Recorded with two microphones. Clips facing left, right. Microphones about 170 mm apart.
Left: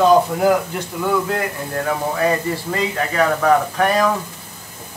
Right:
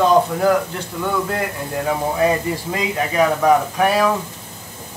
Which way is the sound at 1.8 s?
15° right (ahead or behind).